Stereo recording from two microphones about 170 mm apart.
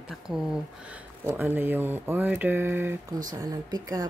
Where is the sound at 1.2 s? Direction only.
15° right (ahead or behind).